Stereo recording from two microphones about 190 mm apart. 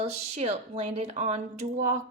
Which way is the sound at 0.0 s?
35° right (ahead or behind).